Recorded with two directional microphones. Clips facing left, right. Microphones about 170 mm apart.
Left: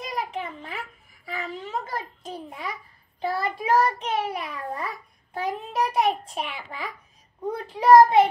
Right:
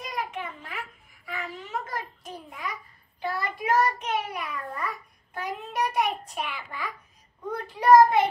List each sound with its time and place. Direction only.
0.0 s a sound: 30° left (ahead or behind)
3.2 s child singing: 30° left (ahead or behind)
7.5 s a child's voice: 30° left (ahead or behind)